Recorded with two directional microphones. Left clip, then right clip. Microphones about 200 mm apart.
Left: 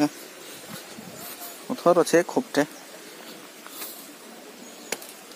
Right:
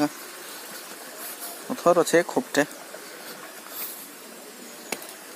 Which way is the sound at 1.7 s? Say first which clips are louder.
Even; 25° left (ahead or behind).